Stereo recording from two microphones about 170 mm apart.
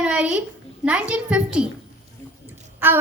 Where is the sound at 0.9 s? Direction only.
5° right (ahead or behind).